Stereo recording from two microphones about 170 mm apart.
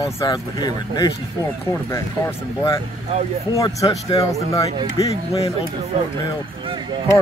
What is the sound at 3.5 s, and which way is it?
Speech, 20° left (ahead or behind).